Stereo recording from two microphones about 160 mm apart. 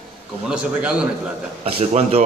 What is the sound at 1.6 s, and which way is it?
Speech, 40° right (ahead or behind).